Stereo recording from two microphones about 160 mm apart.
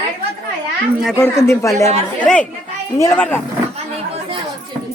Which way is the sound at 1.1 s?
15° left (ahead or behind).